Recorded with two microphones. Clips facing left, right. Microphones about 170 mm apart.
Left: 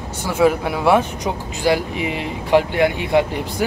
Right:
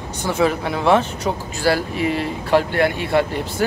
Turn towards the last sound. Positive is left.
turn(degrees=15)  # may be behind; listen again after turning